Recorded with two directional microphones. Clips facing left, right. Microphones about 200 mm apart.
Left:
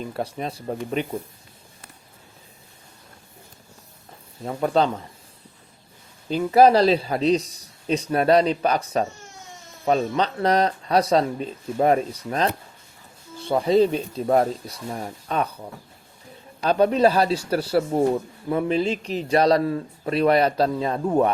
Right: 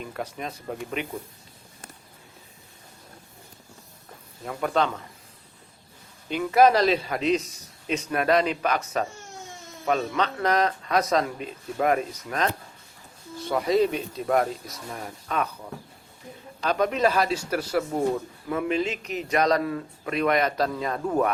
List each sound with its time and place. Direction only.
0.0 s a man's voice: 30° left (ahead or behind)
4.4 s a man's voice: 30° left (ahead or behind)
6.2 s a man's voice: 30° left (ahead or behind)